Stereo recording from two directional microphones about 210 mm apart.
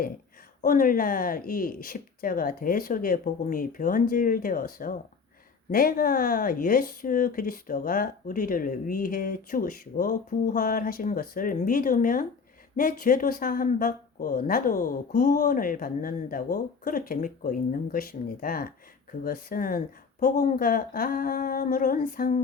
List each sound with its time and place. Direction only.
0.6 s speech: 40° left (ahead or behind)